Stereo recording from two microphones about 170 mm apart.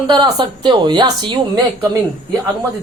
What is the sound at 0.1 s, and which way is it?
A woman's voice, 25° right (ahead or behind).